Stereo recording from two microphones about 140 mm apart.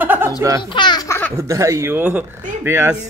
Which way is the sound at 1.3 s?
20° right (ahead or behind).